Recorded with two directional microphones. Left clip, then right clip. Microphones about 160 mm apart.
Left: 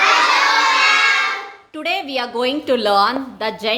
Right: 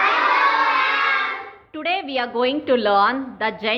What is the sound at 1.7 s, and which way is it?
A woman's voice, 10° left (ahead or behind).